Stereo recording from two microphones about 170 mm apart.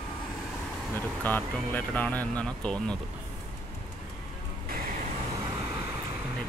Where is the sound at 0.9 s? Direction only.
10° left (ahead or behind).